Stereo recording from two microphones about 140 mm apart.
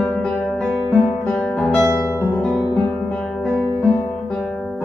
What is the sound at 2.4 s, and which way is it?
Music, 5° left (ahead or behind).